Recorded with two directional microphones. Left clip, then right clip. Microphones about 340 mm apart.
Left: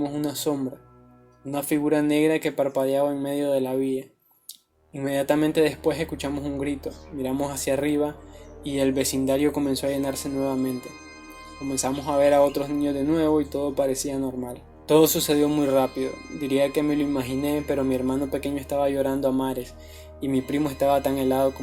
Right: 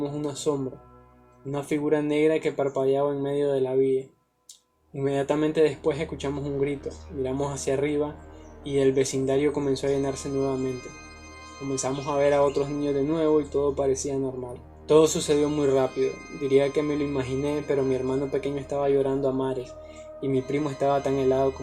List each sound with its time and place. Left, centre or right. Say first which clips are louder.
0.0 s speech: left 1 dB; left
5.0 s speech: left 2 dB; left